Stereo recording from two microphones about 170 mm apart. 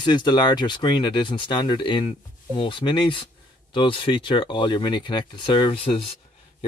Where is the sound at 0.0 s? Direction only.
25° left (ahead or behind).